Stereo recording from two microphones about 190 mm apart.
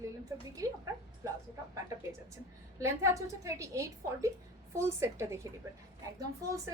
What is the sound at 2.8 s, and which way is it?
A woman's voice, 15° right (ahead or behind).